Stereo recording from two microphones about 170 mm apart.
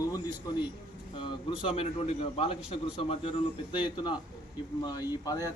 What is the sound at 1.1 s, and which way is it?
A man's voice, 30° left (ahead or behind).